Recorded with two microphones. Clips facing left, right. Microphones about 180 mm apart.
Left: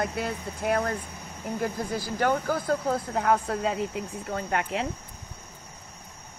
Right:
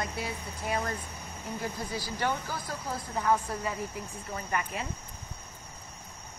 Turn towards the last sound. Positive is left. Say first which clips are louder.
# left 5 dB
turn(degrees=75)  # may be behind; listen again after turning